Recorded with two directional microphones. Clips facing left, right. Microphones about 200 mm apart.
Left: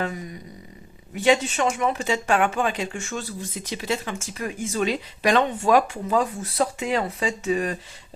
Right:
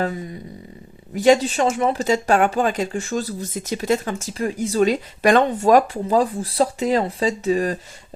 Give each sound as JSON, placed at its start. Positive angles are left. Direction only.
{"t": 0.0, "sound": "a sound", "side_deg": -30}
{"t": 1.1, "sound": "speech", "side_deg": -40}
{"t": 4.4, "sound": "speech", "side_deg": -35}